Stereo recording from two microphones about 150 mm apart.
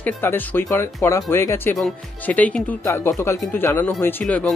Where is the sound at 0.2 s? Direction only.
15° left (ahead or behind).